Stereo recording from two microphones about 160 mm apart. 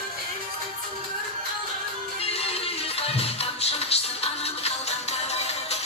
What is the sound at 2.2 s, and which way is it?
Music, 40° left (ahead or behind).